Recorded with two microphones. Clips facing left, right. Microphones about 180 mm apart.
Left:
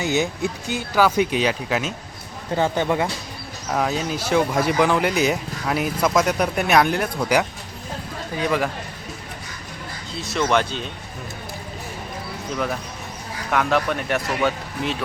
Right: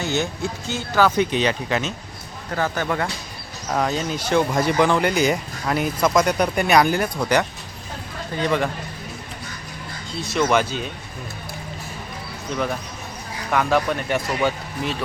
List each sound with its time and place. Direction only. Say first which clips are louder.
0.0 s speech: left 2 dB; 15° left (ahead or behind)
2.6 s speech: left 3 dB; 20° left (ahead or behind)
3.7 s speech: even; 5° left (ahead or behind)
10.2 s speech: right 1 dB; centre (ahead or behind)
13.5 s speech: right 1 dB; centre (ahead or behind)